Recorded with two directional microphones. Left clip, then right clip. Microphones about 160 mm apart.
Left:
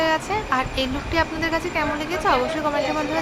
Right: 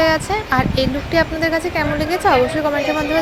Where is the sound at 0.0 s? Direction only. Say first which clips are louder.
Right 5 dB; 35° right (ahead or behind).